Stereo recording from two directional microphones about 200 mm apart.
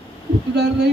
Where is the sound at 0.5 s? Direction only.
55° right (ahead or behind).